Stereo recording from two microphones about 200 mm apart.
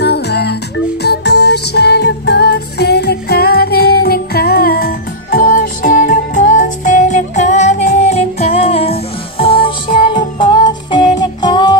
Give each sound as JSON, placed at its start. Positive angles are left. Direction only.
{"t": 0.0, "sound": "music", "side_deg": 55}